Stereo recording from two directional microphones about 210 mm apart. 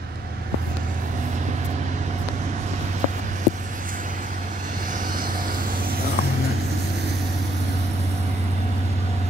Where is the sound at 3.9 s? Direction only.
40° right (ahead or behind).